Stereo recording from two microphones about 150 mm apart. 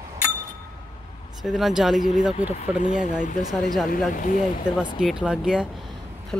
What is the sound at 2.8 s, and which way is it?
Speech, 60° left (ahead or behind).